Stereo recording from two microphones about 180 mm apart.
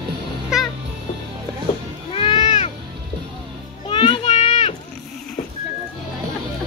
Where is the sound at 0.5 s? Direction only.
5° right (ahead or behind).